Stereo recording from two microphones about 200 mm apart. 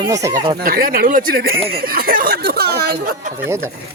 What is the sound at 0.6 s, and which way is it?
Speech, 50° right (ahead or behind).